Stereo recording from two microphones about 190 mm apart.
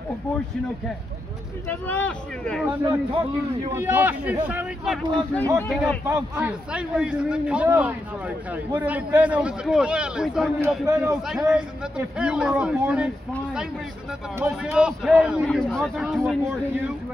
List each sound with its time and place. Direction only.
1.7 s speech: 10° left (ahead or behind)
2.8 s a man's voice: 20° right (ahead or behind)
3.7 s a man's voice: 10° right (ahead or behind); by 5.9 s 5° left (ahead or behind)
6.0 s a man's voice: 10° right (ahead or behind)
14.4 s a man's voice: 5° right (ahead or behind)